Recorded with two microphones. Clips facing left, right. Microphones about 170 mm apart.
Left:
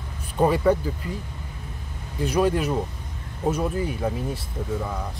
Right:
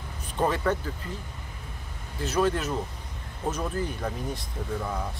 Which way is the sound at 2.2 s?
10° left (ahead or behind).